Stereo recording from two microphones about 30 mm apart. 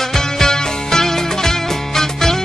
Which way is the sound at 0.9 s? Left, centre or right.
Centre.